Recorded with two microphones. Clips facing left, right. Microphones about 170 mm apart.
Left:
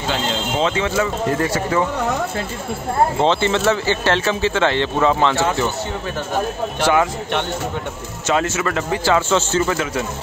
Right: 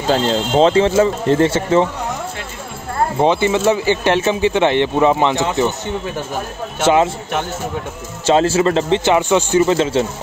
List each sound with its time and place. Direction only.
0.1 s speech: 35° right (ahead or behind)
3.2 s speech: 15° right (ahead or behind)
6.8 s a man's voice: 25° right (ahead or behind)
8.3 s a man's voice: 30° right (ahead or behind)